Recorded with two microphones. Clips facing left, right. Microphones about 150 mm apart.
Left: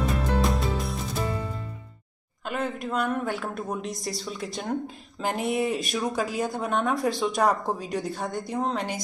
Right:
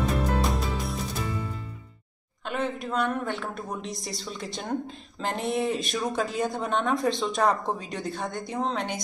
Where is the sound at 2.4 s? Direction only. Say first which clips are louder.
Even; 5° left (ahead or behind).